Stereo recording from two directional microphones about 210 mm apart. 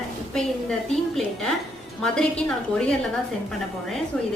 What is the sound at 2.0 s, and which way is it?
Speech, 5° left (ahead or behind).